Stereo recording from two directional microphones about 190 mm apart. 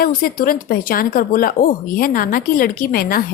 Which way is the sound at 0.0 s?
50° left (ahead or behind).